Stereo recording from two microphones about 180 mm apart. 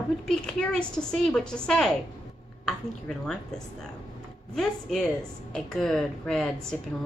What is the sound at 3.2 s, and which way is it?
A woman's voice, 5° left (ahead or behind).